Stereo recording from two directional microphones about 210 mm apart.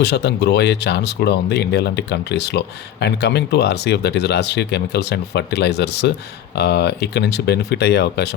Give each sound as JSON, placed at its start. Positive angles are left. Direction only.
{"t": 0.0, "sound": "speech", "side_deg": 55}